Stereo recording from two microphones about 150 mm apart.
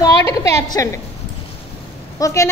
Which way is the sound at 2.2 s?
20° left (ahead or behind).